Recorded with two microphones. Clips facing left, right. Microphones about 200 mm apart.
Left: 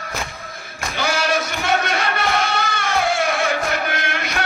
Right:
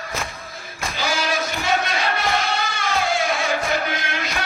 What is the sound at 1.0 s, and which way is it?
Music, 60° left (ahead or behind).